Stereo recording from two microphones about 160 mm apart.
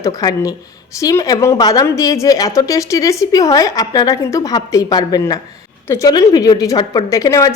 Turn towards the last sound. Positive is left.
turn(degrees=20)  # may be behind; listen again after turning